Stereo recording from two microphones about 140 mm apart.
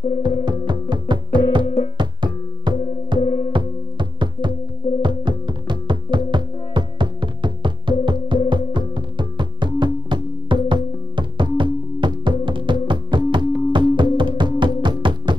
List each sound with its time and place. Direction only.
0.2 s music: 35° right (ahead or behind)